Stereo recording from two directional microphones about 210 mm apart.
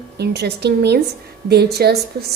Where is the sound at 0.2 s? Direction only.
50° right (ahead or behind).